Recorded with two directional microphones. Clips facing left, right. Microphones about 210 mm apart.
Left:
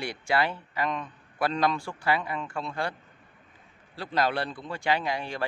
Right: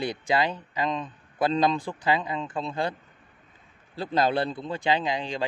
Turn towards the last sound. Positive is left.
turn(degrees=-15)  # may be behind; listen again after turning